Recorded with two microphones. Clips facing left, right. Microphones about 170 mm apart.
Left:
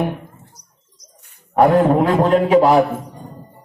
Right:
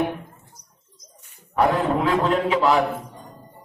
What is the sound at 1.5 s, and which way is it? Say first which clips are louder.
A man's voice: left 7 dB; 40° left (ahead or behind).